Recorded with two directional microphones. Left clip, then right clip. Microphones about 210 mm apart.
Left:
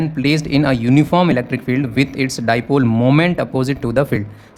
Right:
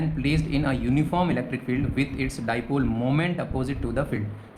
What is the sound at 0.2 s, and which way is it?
Speech, 50° left (ahead or behind).